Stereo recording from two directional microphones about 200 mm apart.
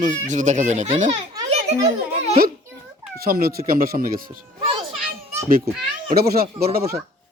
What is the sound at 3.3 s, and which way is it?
Speech, 50° right (ahead or behind).